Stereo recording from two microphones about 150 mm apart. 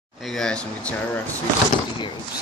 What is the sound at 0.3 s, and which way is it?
Speech, 5° left (ahead or behind).